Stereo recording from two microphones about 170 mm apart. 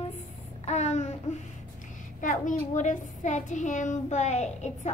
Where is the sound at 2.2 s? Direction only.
50° left (ahead or behind).